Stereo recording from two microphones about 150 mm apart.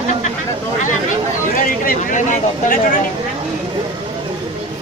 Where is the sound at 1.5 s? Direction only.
65° left (ahead or behind).